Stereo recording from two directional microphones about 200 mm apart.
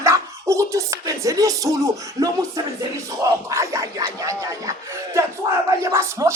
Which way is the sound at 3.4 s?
15° right (ahead or behind).